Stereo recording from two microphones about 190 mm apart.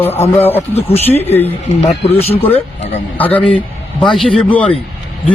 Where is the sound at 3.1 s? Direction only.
10° left (ahead or behind).